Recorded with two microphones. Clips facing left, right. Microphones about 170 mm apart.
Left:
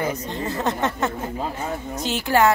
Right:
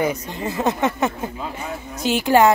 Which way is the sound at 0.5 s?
10° right (ahead or behind).